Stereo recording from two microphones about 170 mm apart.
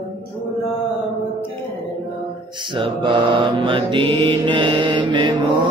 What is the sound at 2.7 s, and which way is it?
Mantra, 30° right (ahead or behind).